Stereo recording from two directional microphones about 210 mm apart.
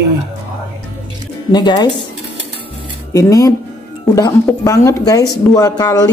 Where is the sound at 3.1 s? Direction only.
15° left (ahead or behind).